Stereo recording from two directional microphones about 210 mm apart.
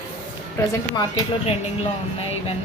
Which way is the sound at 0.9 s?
20° left (ahead or behind).